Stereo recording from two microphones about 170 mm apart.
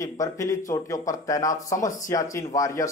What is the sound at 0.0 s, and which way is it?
A man's voice, 20° left (ahead or behind).